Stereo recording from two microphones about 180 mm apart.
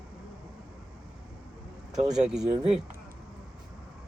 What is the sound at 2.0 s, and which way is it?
Speech, 40° right (ahead or behind).